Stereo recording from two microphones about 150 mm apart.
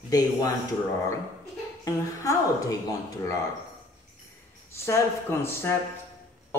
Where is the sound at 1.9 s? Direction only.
20° left (ahead or behind).